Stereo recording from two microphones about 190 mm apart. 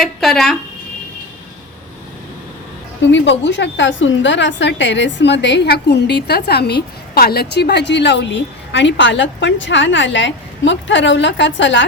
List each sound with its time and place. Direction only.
0.0 s speech: centre (ahead or behind)
3.1 s a woman's voice: 70° left (ahead or behind)